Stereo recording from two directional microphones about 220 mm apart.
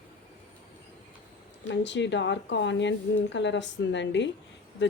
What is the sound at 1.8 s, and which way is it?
A woman's voice, 55° left (ahead or behind).